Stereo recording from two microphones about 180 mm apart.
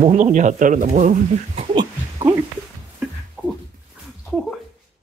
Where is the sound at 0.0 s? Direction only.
45° right (ahead or behind).